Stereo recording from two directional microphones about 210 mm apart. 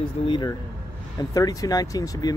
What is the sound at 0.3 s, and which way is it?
Speech, 20° left (ahead or behind).